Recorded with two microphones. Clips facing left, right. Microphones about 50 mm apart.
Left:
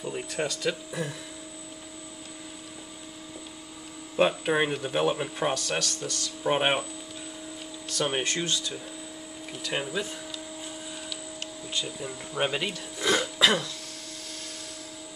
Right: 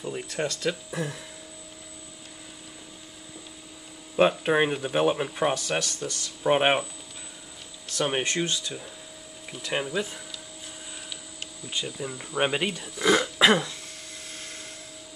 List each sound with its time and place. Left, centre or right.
0.0 s speech: centre
4.2 s speech: centre
7.9 s speech: centre
11.7 s speech: centre
12.4 s speech: centre
13.4 s throat clearing: right